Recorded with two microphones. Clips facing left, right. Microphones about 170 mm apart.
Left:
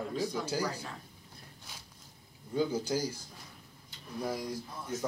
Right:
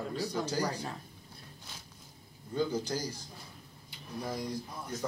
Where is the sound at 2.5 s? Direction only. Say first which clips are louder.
Left 1 dB; 10° left (ahead or behind).